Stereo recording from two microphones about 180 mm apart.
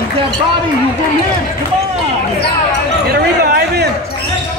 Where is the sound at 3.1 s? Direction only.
60° right (ahead or behind).